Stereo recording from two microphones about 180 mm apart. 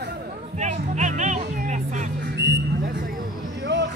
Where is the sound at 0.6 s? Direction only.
40° right (ahead or behind).